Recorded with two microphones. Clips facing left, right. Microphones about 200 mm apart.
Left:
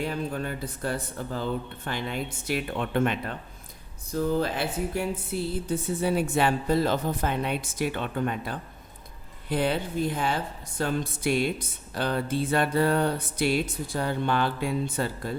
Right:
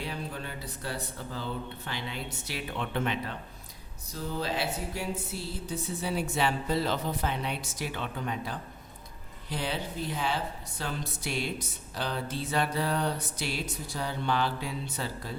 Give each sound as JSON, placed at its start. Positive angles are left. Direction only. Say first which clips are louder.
{"t": 0.0, "sound": "a woman's voice", "louder": "left 7 dB", "side_deg": 50}